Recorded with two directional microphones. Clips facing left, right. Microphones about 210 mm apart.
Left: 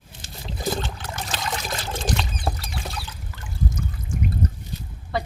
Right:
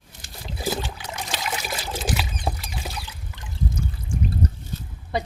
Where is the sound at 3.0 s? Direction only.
25° right (ahead or behind).